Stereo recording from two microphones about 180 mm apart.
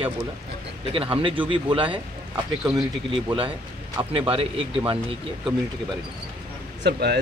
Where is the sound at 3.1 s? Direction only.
30° right (ahead or behind).